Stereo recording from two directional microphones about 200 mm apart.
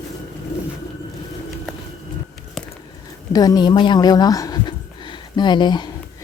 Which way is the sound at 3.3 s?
20° left (ahead or behind).